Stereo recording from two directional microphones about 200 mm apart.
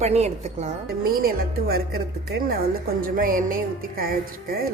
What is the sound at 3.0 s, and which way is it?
Speech, 45° right (ahead or behind).